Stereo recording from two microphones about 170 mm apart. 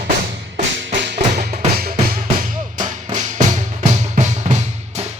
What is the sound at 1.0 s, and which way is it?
Music, 80° right.